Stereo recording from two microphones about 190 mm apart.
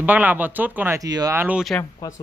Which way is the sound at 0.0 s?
10° right (ahead or behind).